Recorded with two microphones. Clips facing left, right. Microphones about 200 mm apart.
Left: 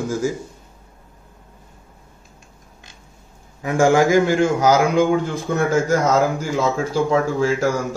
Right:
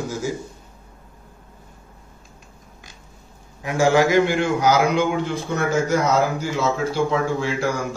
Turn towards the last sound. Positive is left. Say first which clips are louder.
# left 3 dB
turn(degrees=45)  # may be behind; listen again after turning